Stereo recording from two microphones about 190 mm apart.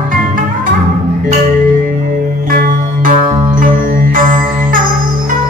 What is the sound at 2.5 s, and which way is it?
Music, 45° right (ahead or behind).